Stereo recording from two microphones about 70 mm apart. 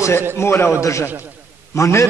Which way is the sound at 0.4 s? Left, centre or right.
Left.